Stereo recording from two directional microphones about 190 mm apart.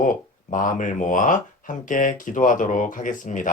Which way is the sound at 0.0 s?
45° left (ahead or behind).